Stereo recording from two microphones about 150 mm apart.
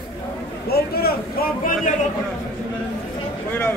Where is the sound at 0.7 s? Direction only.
90° left.